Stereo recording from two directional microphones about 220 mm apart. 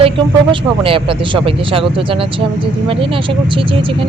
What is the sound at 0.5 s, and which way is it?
Speech, 25° right (ahead or behind).